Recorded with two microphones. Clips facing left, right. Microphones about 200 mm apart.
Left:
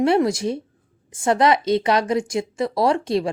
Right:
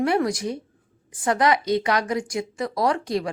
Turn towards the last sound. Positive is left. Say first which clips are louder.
# left 4 dB
turn(degrees=25)  # may be behind; listen again after turning